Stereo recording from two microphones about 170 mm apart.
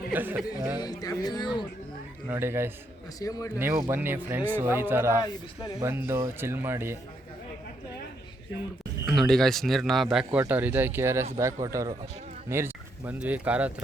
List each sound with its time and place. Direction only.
0.1 s speech: 10° right (ahead or behind)
0.8 s speech: 20° left (ahead or behind)
2.3 s speech: 15° right (ahead or behind)
3.2 s speech: 20° left (ahead or behind)
3.6 s speech: 15° right (ahead or behind)
9.0 s a man's voice: centre (ahead or behind)